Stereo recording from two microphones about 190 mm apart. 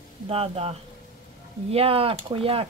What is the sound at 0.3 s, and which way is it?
Speech, 30° right (ahead or behind).